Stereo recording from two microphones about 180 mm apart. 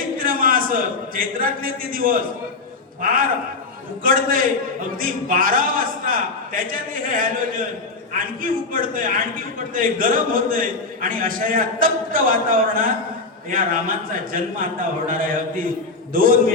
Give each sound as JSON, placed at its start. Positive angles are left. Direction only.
{"t": 0.2, "sound": "a man's voice", "side_deg": -50}